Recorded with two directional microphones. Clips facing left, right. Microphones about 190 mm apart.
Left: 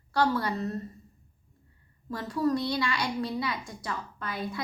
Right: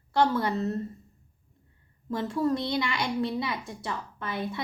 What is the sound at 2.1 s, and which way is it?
A woman's voice, 25° right (ahead or behind).